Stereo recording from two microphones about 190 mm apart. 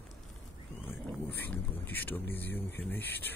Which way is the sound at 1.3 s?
10° left (ahead or behind).